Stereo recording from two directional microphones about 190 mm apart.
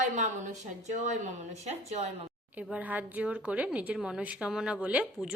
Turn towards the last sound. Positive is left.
turn(degrees=-5)  # may be behind; listen again after turning